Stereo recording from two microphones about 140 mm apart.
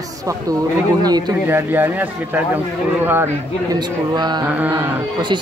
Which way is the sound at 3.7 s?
30° right (ahead or behind).